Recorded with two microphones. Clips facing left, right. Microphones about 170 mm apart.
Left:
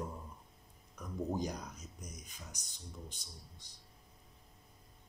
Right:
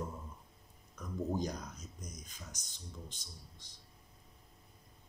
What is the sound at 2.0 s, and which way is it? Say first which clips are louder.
Speech: right 2 dB; 70° left (ahead or behind).